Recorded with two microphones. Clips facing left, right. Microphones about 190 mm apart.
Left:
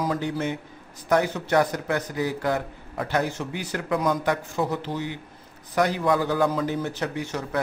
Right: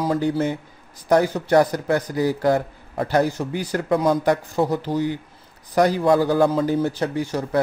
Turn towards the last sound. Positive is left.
turn(degrees=-35)  # may be behind; listen again after turning